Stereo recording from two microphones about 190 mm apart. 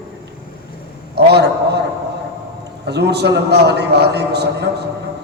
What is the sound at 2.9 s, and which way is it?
A man's voice, 60° right (ahead or behind).